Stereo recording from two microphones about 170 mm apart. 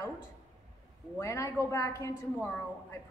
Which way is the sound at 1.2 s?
20° left (ahead or behind).